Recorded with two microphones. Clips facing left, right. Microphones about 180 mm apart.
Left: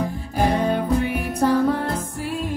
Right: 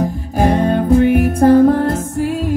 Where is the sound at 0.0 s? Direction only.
45° right (ahead or behind).